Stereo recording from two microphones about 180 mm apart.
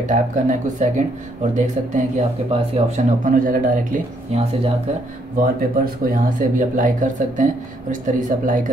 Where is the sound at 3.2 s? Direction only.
50° right (ahead or behind).